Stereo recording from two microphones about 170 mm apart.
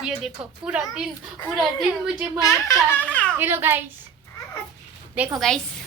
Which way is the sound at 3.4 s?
15° right (ahead or behind).